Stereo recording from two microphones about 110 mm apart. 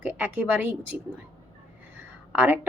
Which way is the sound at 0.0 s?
15° right (ahead or behind).